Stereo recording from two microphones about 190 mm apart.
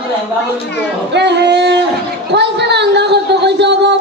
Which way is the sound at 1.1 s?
65° right (ahead or behind).